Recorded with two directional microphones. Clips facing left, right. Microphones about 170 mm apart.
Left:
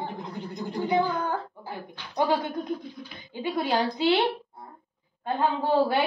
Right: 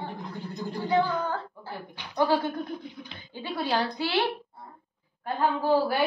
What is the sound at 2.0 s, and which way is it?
Speech, 15° right (ahead or behind).